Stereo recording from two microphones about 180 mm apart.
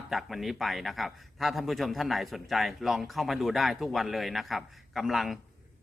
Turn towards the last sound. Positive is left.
turn(degrees=0)  # may be behind; listen again after turning